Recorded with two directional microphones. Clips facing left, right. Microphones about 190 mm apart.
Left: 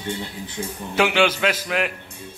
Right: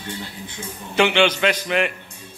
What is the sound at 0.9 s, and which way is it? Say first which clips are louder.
Speech: right 2 dB; 5° left (ahead or behind).